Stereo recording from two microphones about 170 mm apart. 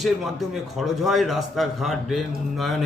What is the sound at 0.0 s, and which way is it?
A man's voice, centre (ahead or behind).